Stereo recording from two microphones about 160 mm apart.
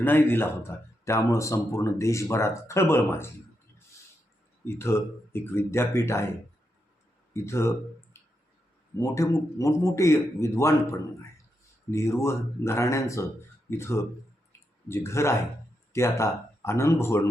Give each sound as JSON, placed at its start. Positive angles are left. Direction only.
{"t": 0.0, "sound": "speech", "side_deg": 10}
{"t": 4.6, "sound": "speech", "side_deg": 15}
{"t": 7.3, "sound": "speech", "side_deg": 15}
{"t": 9.0, "sound": "speech", "side_deg": 20}
{"t": 11.9, "sound": "speech", "side_deg": 15}